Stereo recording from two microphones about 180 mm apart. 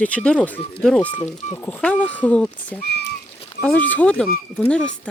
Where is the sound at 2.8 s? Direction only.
65° left (ahead or behind).